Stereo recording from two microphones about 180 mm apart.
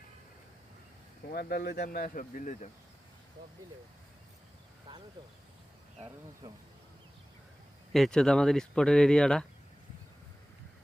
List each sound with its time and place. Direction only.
1.3 s speech: 60° left (ahead or behind)
2.1 s speech: 45° left (ahead or behind)
7.9 s speech: centre (ahead or behind)